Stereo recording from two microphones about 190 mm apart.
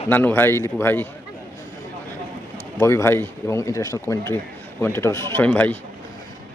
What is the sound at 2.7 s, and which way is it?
Speech, 15° left (ahead or behind).